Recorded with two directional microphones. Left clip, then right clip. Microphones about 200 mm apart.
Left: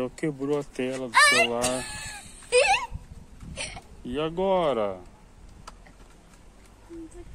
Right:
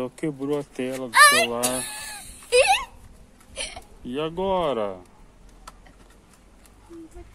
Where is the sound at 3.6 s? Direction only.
20° right (ahead or behind).